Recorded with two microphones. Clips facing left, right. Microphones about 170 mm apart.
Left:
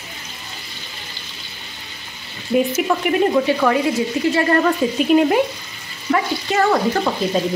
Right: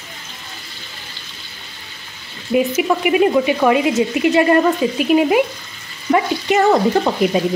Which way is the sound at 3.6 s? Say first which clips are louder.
Right 3 dB; 20° right (ahead or behind).